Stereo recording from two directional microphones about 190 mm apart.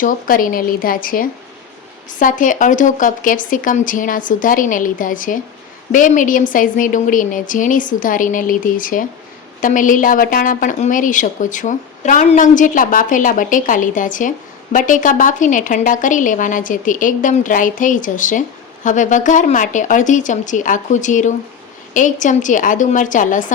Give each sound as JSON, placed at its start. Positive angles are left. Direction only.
{"t": 0.0, "sound": "a woman's voice", "side_deg": 45}